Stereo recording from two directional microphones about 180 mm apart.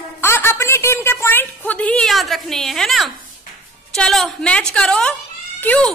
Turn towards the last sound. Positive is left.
turn(degrees=10)  # may be behind; listen again after turning